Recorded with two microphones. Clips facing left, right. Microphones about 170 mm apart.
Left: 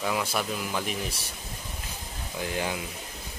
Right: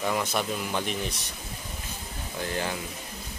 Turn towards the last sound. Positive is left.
turn(degrees=10)  # may be behind; listen again after turning